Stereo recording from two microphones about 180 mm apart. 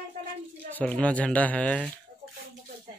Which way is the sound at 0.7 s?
10° left (ahead or behind).